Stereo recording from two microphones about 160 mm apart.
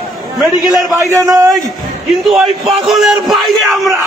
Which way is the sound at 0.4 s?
Centre (ahead or behind).